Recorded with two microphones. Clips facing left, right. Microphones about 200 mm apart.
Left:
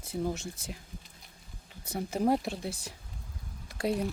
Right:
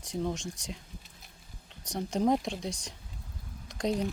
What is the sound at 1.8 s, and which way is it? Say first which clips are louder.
Speech: right 1 dB; 5° left (ahead or behind).